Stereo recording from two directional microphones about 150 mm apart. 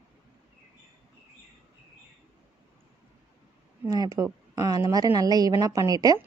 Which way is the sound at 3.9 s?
25° right (ahead or behind).